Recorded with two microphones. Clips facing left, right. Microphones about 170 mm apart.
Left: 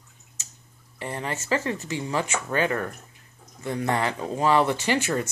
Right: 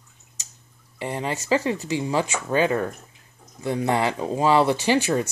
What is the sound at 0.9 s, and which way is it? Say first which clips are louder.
Speech: right 4 dB; 20° right (ahead or behind).